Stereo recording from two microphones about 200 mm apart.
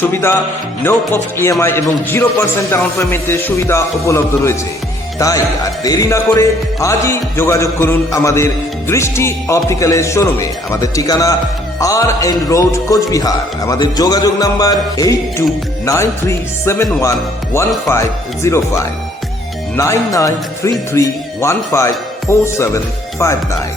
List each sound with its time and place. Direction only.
0.0 s speech: 10° left (ahead or behind)
16.6 s speech: 15° left (ahead or behind)